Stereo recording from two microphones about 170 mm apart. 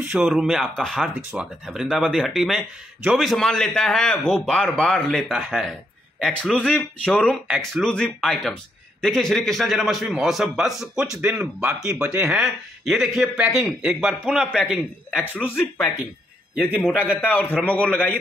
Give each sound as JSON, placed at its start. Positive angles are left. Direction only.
{"t": 0.0, "sound": "speech", "side_deg": -5}
{"t": 16.5, "sound": "a man's voice", "side_deg": -10}
{"t": 17.2, "sound": "a man's voice", "side_deg": 10}